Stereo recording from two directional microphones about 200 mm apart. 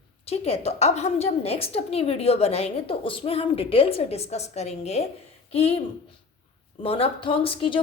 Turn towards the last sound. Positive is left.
turn(degrees=25)  # may be behind; listen again after turning